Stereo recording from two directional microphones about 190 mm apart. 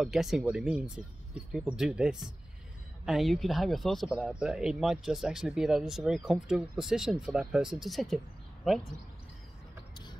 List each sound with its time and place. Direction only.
0.0 s speech: centre (ahead or behind)